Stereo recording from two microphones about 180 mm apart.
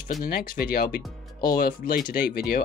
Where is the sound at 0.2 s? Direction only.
55° left (ahead or behind).